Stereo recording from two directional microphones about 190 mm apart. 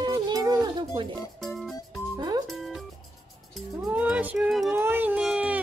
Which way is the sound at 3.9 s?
10° right (ahead or behind).